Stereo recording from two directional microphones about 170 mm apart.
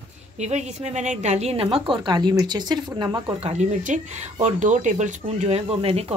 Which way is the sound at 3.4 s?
40° right (ahead or behind).